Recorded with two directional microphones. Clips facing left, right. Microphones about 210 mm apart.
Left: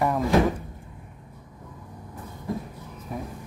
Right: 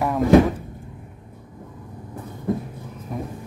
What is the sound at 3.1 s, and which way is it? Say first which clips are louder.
Music: right 4 dB; centre (ahead or behind).